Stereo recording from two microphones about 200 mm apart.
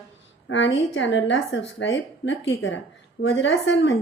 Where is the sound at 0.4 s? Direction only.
65° left (ahead or behind).